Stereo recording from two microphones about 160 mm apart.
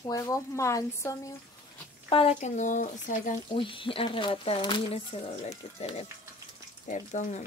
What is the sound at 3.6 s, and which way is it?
Speech, 30° left (ahead or behind).